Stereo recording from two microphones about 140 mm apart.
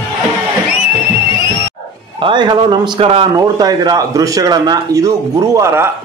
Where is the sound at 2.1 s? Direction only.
35° right (ahead or behind).